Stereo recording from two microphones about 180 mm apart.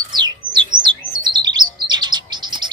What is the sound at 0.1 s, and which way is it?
Bird, 25° right (ahead or behind).